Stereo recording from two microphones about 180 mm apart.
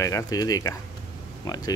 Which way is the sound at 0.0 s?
20° left (ahead or behind).